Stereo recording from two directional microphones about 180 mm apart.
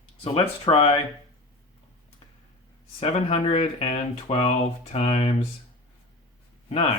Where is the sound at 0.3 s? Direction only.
30° left (ahead or behind).